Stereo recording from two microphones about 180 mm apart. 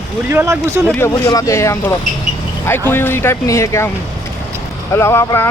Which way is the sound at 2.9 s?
10° left (ahead or behind).